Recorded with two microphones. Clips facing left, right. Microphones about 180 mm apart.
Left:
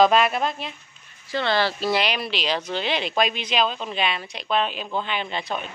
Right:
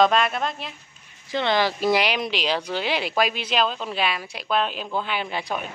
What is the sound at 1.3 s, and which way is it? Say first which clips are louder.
Speech: right 1 dB; 15° right (ahead or behind).